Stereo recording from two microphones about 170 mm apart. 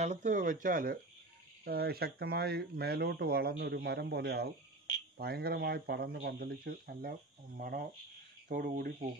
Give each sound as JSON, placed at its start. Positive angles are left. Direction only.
{"t": 0.0, "sound": "speech", "side_deg": -45}
{"t": 1.6, "sound": "speech", "side_deg": -65}